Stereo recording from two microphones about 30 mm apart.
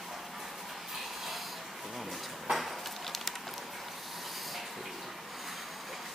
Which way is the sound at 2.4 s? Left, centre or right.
Centre.